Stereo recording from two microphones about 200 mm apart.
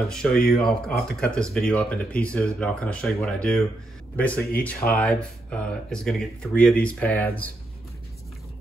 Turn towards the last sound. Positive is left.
turn(degrees=10)  # may be behind; listen again after turning